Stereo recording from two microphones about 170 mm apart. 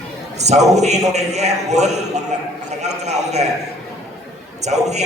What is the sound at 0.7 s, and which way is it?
A man's voice, 40° right (ahead or behind).